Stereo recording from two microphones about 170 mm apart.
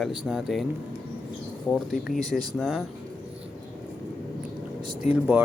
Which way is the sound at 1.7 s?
Centre (ahead or behind).